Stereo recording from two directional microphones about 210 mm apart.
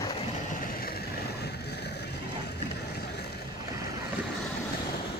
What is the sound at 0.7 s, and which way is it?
Vehicle, 50° left (ahead or behind).